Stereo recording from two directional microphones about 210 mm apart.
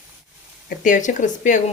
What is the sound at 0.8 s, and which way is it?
Speech, 40° left (ahead or behind).